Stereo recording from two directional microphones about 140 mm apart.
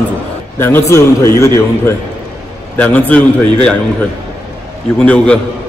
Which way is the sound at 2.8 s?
10° left (ahead or behind).